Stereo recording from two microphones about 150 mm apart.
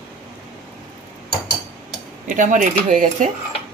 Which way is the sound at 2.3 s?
60° right (ahead or behind).